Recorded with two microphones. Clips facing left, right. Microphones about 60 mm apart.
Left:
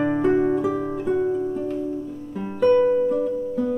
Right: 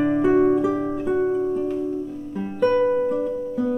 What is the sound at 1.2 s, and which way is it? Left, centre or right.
Music, centre.